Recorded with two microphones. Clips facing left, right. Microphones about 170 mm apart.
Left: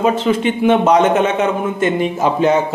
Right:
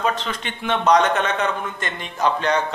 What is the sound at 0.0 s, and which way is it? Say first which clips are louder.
Speech: left 10 dB; 10° left (ahead or behind).